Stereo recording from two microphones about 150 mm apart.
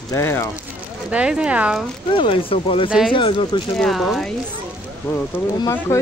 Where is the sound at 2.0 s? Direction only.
35° left (ahead or behind).